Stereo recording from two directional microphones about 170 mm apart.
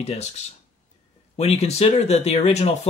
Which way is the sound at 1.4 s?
35° left (ahead or behind).